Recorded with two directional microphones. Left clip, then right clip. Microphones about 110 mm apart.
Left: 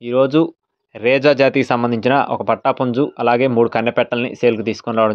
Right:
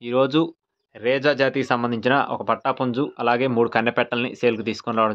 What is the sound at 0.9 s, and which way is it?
Speech, 70° left (ahead or behind).